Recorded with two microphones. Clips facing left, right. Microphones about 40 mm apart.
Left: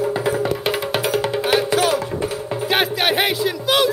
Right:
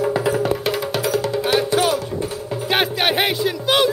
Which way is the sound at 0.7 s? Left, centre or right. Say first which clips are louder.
Even; left.